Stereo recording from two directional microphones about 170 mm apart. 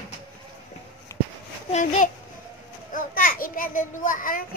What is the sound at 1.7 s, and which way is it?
Speech, 45° left (ahead or behind).